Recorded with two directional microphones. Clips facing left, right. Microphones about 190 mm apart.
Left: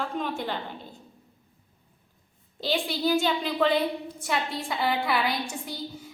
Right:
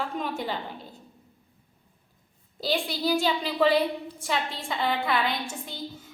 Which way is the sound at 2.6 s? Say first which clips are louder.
Even; centre (ahead or behind).